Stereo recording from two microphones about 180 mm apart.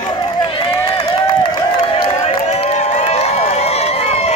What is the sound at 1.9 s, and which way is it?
Crowd, 35° left (ahead or behind).